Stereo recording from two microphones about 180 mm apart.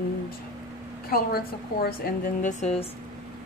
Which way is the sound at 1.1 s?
55° left (ahead or behind).